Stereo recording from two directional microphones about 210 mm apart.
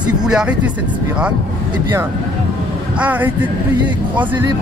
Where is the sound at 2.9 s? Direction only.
10° right (ahead or behind).